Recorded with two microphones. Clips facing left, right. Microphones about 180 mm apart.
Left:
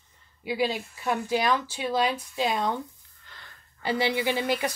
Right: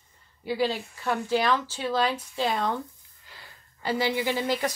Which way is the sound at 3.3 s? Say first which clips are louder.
Right 1 dB; 10° right (ahead or behind).